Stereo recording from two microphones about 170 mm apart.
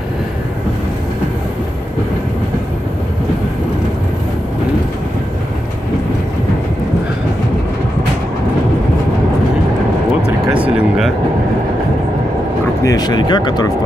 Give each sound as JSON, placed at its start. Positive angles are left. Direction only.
{"t": 10.5, "sound": "vehicle", "side_deg": -5}
{"t": 12.8, "sound": "speech", "side_deg": 25}